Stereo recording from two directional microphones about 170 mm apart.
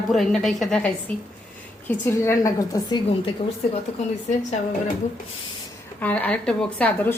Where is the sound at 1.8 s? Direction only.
15° left (ahead or behind).